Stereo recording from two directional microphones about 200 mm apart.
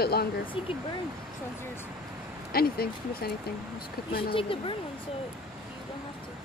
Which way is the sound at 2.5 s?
50° left (ahead or behind).